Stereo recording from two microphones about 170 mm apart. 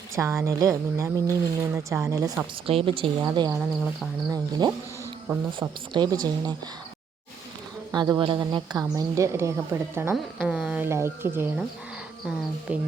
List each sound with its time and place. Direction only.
0.2 s a woman's voice: 15° right (ahead or behind)
2.6 s speech: 35° right (ahead or behind)
3.6 s a sound: 5° right (ahead or behind)
4.3 s speech: 25° right (ahead or behind)
7.9 s a woman's voice: 25° right (ahead or behind)
12.7 s a woman's voice: 10° right (ahead or behind)